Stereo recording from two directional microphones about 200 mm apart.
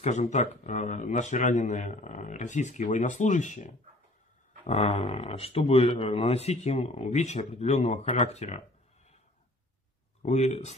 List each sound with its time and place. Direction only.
0.0 s speech: 35° left (ahead or behind)
10.2 s speech: 35° left (ahead or behind)